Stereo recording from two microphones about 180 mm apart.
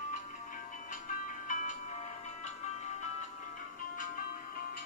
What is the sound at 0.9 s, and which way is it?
Music, 45° left (ahead or behind).